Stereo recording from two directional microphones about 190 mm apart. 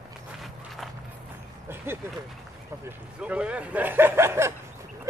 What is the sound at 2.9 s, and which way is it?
Speech, 5° right (ahead or behind).